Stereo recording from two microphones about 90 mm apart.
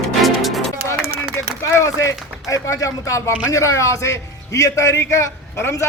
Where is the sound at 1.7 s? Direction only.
35° left (ahead or behind).